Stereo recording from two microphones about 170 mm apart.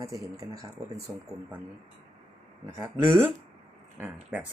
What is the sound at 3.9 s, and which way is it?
Speech, 10° right (ahead or behind).